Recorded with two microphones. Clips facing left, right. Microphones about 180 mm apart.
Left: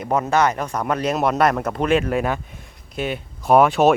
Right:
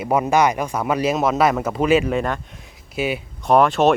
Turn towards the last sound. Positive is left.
turn(degrees=5)  # may be behind; listen again after turning